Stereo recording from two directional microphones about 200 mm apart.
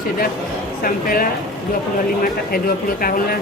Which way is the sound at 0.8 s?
45° left (ahead or behind).